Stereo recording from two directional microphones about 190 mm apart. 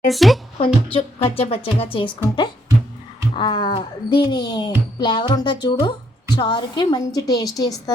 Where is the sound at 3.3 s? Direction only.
25° left (ahead or behind).